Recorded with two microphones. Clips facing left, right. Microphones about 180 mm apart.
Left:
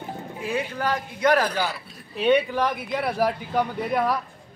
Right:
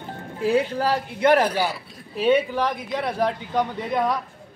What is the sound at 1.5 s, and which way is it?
Speech, 5° right (ahead or behind).